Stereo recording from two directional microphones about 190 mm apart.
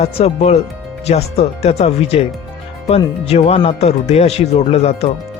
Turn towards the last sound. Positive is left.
turn(degrees=35)  # may be behind; listen again after turning